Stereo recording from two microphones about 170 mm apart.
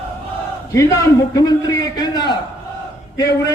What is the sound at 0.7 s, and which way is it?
A man's voice, 20° left (ahead or behind).